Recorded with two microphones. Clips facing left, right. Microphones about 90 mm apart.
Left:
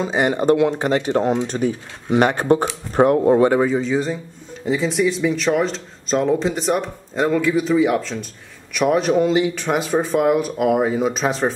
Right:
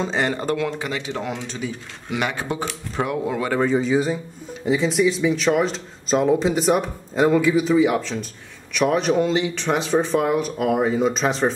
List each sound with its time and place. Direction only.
0.0 s speech: 15° left (ahead or behind)
0.7 s speech: 45° left (ahead or behind)
3.7 s speech: 5° right (ahead or behind)